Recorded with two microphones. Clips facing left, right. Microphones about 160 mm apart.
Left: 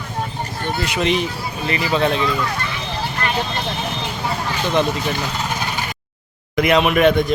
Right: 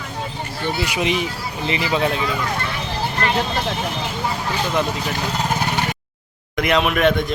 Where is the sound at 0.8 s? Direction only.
10° right (ahead or behind).